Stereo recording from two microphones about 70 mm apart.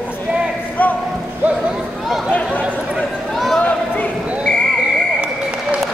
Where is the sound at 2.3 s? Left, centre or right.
Centre.